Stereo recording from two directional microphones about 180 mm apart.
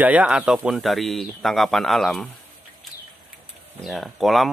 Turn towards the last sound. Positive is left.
turn(degrees=0)  # may be behind; listen again after turning